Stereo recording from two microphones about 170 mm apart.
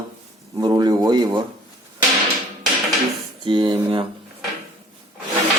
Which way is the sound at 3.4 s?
30° right (ahead or behind).